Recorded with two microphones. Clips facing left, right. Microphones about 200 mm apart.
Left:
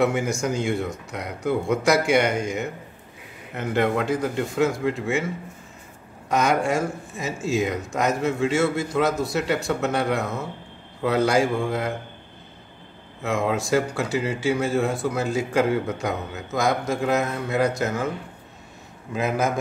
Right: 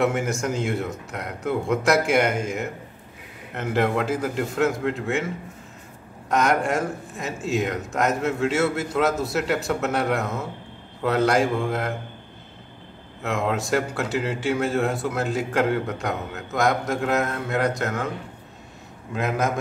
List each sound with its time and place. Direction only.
0.0 s speech: centre (ahead or behind)
13.2 s speech: centre (ahead or behind)
19.1 s speech: centre (ahead or behind)